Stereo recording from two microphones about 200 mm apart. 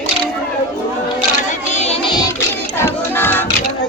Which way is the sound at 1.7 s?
30° left (ahead or behind).